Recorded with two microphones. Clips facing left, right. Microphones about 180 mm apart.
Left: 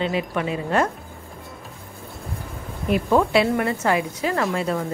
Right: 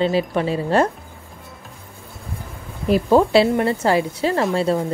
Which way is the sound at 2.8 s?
30° right (ahead or behind).